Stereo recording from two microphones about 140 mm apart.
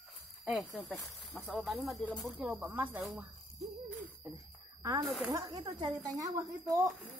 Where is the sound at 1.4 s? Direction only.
Centre (ahead or behind).